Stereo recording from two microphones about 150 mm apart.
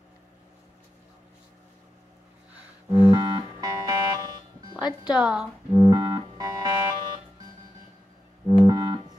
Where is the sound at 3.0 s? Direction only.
30° right (ahead or behind).